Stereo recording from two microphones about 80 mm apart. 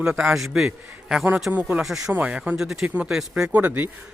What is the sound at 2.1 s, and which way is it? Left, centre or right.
Speech, centre.